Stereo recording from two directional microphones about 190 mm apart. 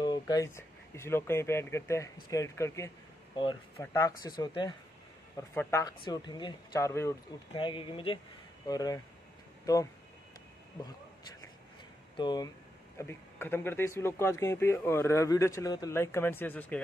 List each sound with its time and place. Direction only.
0.0 s speech: 20° left (ahead or behind)
3.3 s speech: 25° left (ahead or behind)
7.5 s speech: 25° left (ahead or behind)
12.2 s speech: 20° left (ahead or behind)
12.9 s speech: 10° left (ahead or behind)